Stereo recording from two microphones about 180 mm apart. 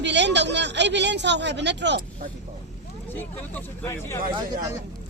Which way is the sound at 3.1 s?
10° left (ahead or behind).